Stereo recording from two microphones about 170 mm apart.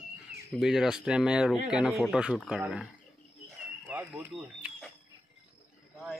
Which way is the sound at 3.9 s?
10° right (ahead or behind).